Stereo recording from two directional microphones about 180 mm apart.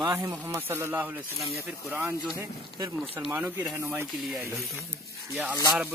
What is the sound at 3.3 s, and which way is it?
Speech, 5° right (ahead or behind).